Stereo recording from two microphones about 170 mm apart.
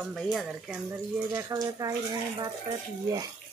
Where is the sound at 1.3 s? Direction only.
20° right (ahead or behind).